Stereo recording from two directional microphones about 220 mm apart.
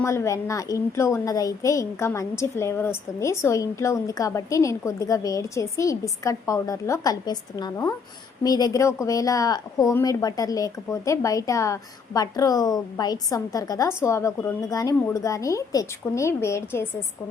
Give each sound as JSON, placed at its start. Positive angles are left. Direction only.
{"t": 0.0, "sound": "speech", "side_deg": 15}